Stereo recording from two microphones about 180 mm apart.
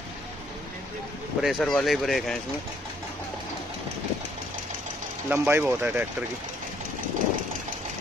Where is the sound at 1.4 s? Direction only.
Centre (ahead or behind).